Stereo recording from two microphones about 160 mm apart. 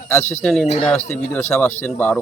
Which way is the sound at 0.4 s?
5° left (ahead or behind).